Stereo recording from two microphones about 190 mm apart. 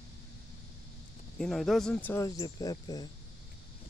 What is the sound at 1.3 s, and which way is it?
Speech, centre (ahead or behind).